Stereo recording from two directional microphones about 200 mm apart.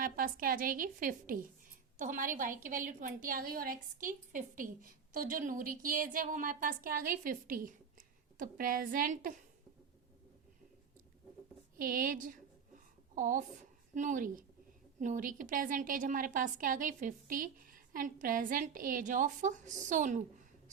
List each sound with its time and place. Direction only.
0.0 s a woman's voice: 45° right (ahead or behind)
11.8 s a sound: 45° right (ahead or behind)
15.0 s a woman's voice: 40° right (ahead or behind)